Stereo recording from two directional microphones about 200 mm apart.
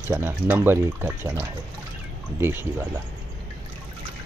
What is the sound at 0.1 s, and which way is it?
Speech, 10° right (ahead or behind).